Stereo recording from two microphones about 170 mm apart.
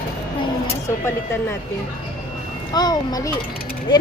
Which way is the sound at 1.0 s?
15° left (ahead or behind).